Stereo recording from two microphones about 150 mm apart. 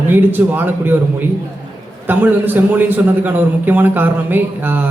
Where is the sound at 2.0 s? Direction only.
10° right (ahead or behind).